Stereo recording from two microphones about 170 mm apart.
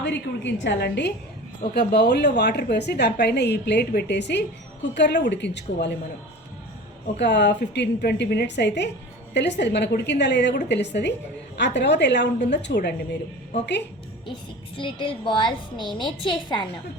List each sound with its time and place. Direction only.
0.0 s a woman's voice: 90° left
1.7 s a woman's voice: 75° left (ahead or behind)
7.2 s a woman's voice: 90° left
14.8 s a child's voice: 30° left (ahead or behind)